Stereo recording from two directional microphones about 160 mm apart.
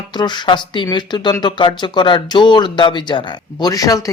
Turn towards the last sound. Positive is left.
turn(degrees=20)  # may be behind; listen again after turning